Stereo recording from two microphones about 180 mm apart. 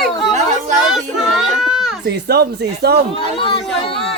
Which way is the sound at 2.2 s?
65° right (ahead or behind).